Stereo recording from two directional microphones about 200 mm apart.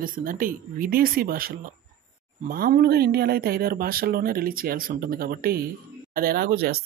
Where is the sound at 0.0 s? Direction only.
45° right (ahead or behind).